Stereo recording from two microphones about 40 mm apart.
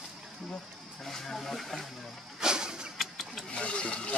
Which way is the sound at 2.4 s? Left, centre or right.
Centre.